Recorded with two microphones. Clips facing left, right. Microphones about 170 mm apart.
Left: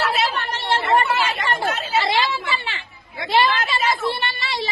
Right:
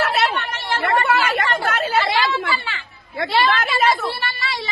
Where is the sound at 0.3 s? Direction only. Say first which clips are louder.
Left 1 dB; 30° left (ahead or behind).